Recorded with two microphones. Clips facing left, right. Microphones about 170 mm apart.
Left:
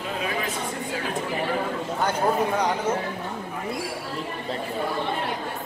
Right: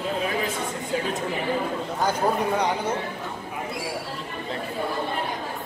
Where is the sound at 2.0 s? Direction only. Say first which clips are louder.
Even; 10° right (ahead or behind).